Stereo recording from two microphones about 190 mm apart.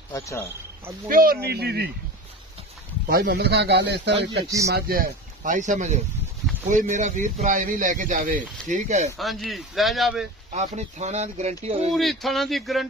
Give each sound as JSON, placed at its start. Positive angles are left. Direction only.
{"t": 0.1, "sound": "speech", "side_deg": 15}
{"t": 1.0, "sound": "a man's voice", "side_deg": -50}
{"t": 3.1, "sound": "a man's voice", "side_deg": -60}
{"t": 9.1, "sound": "a man's voice", "side_deg": 0}
{"t": 10.5, "sound": "speech", "side_deg": -35}
{"t": 11.9, "sound": "a man's voice", "side_deg": 0}